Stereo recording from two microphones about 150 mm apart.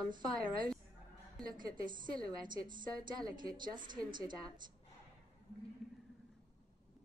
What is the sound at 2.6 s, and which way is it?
A woman's voice, 30° right (ahead or behind).